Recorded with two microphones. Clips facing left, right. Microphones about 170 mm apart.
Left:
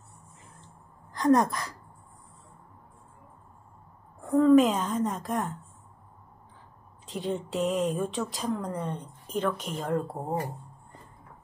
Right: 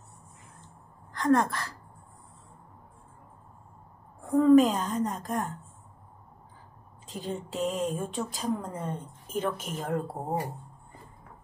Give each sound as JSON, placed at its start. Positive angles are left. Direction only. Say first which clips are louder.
{"t": 1.1, "sound": "a woman's voice", "louder": "left 2 dB", "side_deg": 20}
{"t": 4.2, "sound": "a woman's voice", "louder": "even", "side_deg": 0}
{"t": 7.1, "sound": "speech", "louder": "left 4 dB", "side_deg": 0}